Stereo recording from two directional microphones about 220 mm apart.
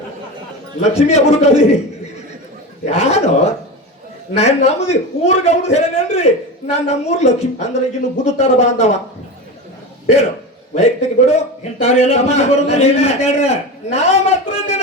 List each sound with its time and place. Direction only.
0.9 s a man's voice: 30° left (ahead or behind)
2.8 s a man's voice: 30° left (ahead or behind)
10.8 s a man's voice: 30° left (ahead or behind)